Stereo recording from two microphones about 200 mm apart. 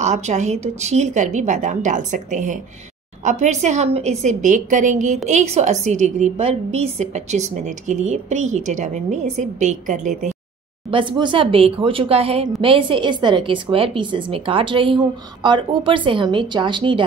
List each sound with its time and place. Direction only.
0.0 s a woman's voice: 35° right (ahead or behind)
10.9 s a woman's voice: 25° right (ahead or behind)